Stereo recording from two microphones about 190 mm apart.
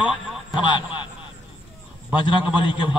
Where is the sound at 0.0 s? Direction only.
Centre (ahead or behind).